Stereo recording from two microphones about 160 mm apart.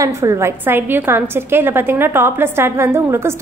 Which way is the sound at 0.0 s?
20° right (ahead or behind).